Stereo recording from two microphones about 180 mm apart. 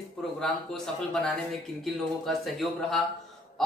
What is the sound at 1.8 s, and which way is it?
Speech, centre (ahead or behind).